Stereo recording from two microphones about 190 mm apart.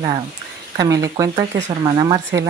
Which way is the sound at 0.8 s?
20° right (ahead or behind).